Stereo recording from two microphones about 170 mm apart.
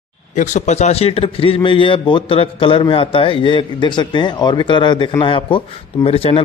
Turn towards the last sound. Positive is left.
turn(degrees=35)  # may be behind; listen again after turning